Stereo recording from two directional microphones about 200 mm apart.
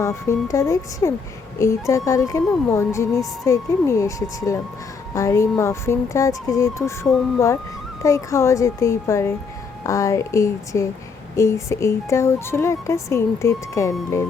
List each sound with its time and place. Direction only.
0.0 s speech: 15° left (ahead or behind)